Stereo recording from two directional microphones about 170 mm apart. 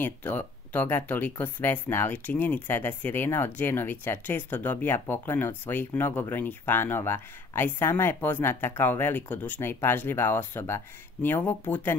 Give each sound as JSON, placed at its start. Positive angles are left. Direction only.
{"t": 0.0, "sound": "speech", "side_deg": 10}